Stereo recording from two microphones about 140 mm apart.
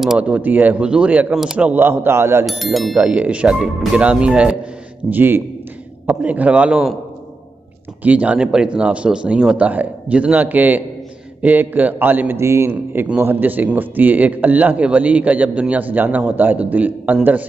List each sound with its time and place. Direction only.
0.0 s a man's voice: 5° right (ahead or behind)
2.4 s a man's voice: centre (ahead or behind)
8.0 s a man's voice: 10° right (ahead or behind)